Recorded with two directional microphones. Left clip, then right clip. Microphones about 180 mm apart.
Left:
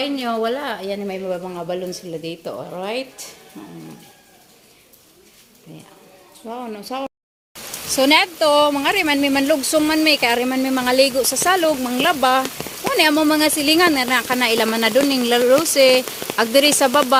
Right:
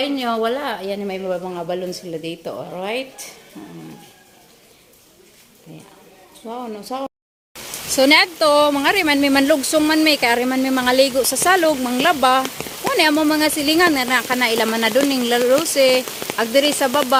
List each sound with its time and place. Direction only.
0.0 s a woman's voice: centre (ahead or behind)
6.4 s a woman's voice: 5° left (ahead or behind)
9.6 s a woman's voice: centre (ahead or behind); by 17.0 s 15° left (ahead or behind)